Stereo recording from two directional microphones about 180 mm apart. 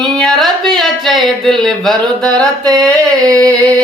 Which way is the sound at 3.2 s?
20° right (ahead or behind).